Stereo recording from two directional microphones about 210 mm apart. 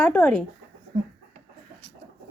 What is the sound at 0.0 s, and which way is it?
Speech, 10° left (ahead or behind).